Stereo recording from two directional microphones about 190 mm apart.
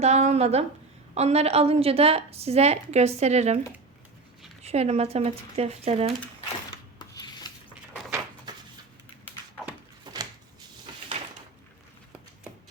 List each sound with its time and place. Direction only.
0.0 s a woman's voice: 35° right (ahead or behind)
4.6 s a woman's voice: 35° right (ahead or behind)
7.2 s rub: 20° left (ahead or behind)
8.5 s a sound: 20° right (ahead or behind)
10.0 s shuffling cards: 20° right (ahead or behind)